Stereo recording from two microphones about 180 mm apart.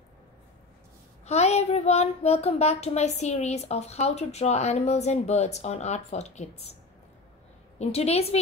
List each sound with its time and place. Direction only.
1.2 s speech: 35° left (ahead or behind)
7.8 s speech: 35° left (ahead or behind)